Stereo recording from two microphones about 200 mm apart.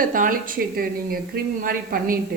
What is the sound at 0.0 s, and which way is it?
Speech, 40° right (ahead or behind).